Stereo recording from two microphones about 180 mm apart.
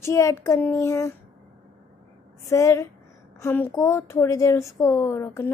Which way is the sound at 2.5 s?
15° left (ahead or behind).